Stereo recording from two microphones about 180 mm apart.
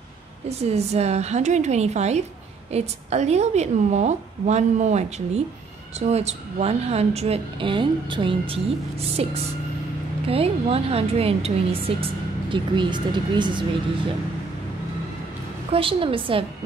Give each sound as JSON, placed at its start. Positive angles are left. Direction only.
{"t": 0.5, "sound": "a woman's voice", "side_deg": -35}
{"t": 15.7, "sound": "a woman's voice", "side_deg": -30}